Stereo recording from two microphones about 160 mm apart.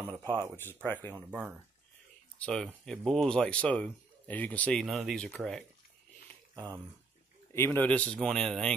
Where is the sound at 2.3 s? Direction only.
5° left (ahead or behind).